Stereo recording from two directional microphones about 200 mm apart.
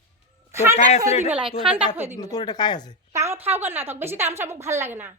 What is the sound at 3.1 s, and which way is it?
A woman's voice, 15° right (ahead or behind).